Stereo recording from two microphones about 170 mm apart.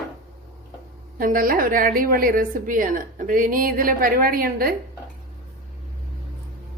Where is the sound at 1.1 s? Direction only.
55° right (ahead or behind).